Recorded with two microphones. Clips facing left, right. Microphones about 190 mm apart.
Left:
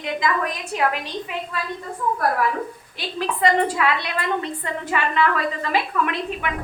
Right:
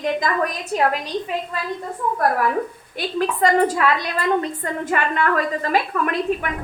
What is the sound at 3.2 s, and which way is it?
A woman's voice, 45° right (ahead or behind).